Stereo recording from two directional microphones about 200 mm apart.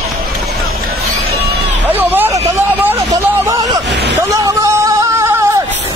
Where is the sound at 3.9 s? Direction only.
60° right (ahead or behind).